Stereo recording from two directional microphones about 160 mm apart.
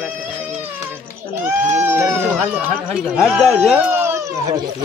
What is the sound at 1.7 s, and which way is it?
Speech, 15° right (ahead or behind).